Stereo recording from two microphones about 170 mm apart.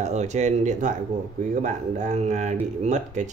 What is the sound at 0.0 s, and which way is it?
Speech, 45° right (ahead or behind).